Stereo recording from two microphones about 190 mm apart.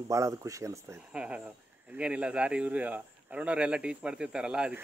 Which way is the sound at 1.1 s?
5° right (ahead or behind).